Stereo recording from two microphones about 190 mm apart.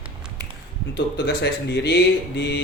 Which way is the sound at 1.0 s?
65° left (ahead or behind).